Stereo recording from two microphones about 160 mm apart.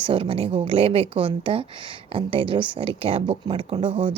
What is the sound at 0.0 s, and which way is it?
A woman's voice, 35° right (ahead or behind).